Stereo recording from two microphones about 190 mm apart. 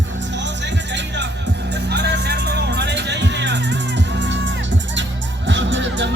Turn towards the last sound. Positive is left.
turn(degrees=-70)  # may be behind; listen again after turning